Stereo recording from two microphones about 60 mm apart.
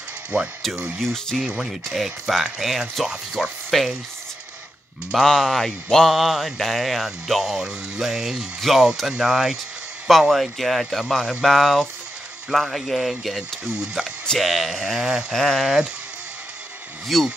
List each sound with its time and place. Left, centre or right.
0.3 s speech: right
0.9 s speech: centre
1.4 s mantra: centre
3.1 s speech: centre
5.1 s mantra: centre
9.0 s speech: centre
10.0 s mantra: centre
14.4 s speech: centre
15.3 s mantra: centre
15.6 s speech: centre
17.1 s mantra: centre